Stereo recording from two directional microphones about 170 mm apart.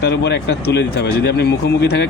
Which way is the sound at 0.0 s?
90° left.